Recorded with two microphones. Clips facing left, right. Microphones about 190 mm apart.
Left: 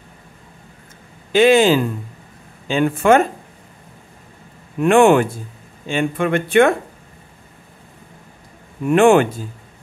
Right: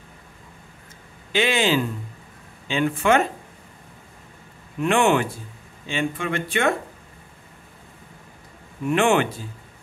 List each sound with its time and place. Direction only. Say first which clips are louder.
1.3 s speech: left 9 dB; 45° left (ahead or behind)
4.7 s speech: left 7 dB; 50° left (ahead or behind)
8.8 s speech: left 7 dB; 50° left (ahead or behind)